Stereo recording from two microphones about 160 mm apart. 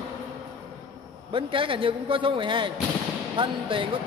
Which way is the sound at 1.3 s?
35° right (ahead or behind).